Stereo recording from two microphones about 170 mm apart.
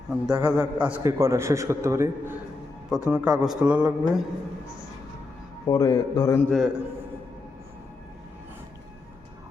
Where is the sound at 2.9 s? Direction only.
5° right (ahead or behind).